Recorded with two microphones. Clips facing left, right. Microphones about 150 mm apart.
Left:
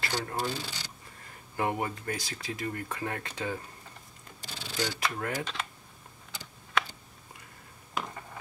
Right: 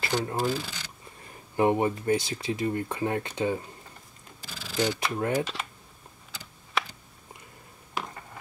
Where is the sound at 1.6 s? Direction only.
25° right (ahead or behind).